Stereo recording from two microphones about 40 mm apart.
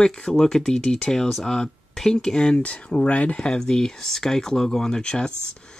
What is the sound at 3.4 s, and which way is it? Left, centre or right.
Speech, centre.